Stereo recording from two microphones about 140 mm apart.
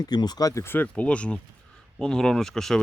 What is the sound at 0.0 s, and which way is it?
Speech, 30° left (ahead or behind).